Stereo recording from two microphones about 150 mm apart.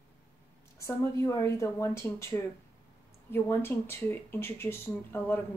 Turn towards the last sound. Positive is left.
turn(degrees=15)  # may be behind; listen again after turning